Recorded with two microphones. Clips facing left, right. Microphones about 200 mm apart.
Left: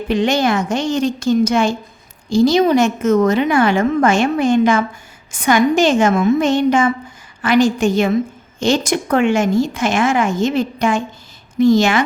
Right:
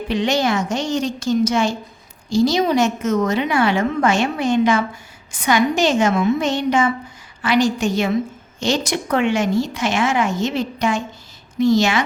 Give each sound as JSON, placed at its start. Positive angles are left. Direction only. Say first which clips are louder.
{"t": 0.1, "sound": "a woman's voice", "louder": "left 3 dB", "side_deg": 50}